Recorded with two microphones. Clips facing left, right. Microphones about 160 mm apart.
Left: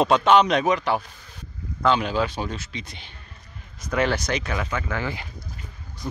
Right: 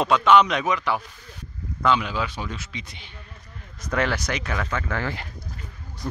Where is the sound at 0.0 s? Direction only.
30° left (ahead or behind).